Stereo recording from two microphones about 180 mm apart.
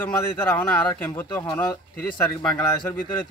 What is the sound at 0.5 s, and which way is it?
Speech, 10° left (ahead or behind).